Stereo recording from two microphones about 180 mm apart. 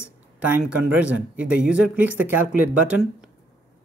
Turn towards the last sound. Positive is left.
turn(degrees=-5)  # may be behind; listen again after turning